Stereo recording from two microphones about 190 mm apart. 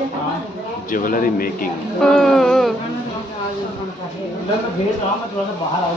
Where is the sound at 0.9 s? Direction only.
45° left (ahead or behind).